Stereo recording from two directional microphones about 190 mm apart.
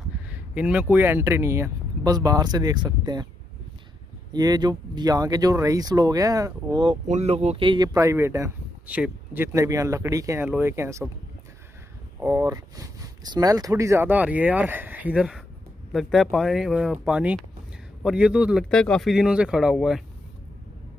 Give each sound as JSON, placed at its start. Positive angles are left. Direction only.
{"t": 0.3, "sound": "speech", "side_deg": -5}
{"t": 4.3, "sound": "speech", "side_deg": -20}
{"t": 7.1, "sound": "speech", "side_deg": -35}
{"t": 12.2, "sound": "speech", "side_deg": -15}